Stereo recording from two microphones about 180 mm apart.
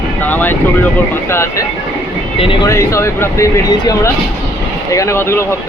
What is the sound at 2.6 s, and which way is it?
Speech, 15° left (ahead or behind).